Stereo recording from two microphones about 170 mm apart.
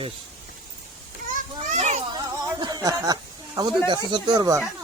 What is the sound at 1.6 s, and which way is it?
Children playing, 40° right (ahead or behind).